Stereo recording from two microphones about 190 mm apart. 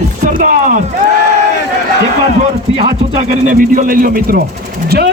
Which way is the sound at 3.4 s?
45° right (ahead or behind).